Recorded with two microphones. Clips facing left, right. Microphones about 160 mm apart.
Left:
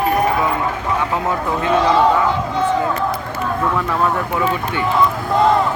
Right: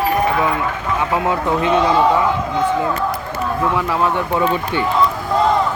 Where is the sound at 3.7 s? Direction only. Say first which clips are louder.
Right 1 dB; centre (ahead or behind).